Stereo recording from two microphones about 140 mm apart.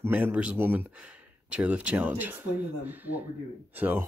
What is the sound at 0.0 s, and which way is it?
Speech, 10° right (ahead or behind).